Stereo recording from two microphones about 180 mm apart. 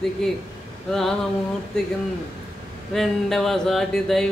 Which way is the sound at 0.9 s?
Centre (ahead or behind).